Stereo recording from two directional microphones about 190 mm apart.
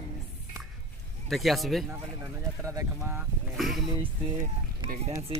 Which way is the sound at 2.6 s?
15° right (ahead or behind).